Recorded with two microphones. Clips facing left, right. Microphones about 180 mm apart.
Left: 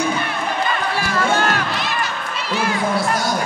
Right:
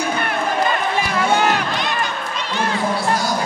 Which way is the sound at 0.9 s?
20° right (ahead or behind).